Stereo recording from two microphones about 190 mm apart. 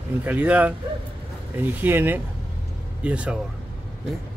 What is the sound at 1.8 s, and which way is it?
Speech, 10° right (ahead or behind).